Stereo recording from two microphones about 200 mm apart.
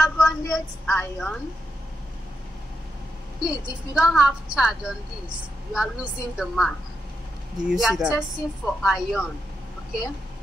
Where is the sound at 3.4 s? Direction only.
5° right (ahead or behind).